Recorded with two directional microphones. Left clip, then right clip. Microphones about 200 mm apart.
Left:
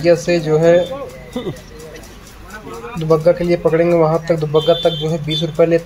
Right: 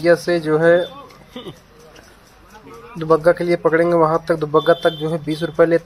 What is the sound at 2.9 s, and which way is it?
Speech, 25° right (ahead or behind).